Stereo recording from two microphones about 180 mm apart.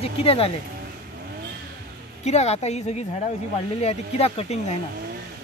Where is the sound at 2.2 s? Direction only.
35° left (ahead or behind).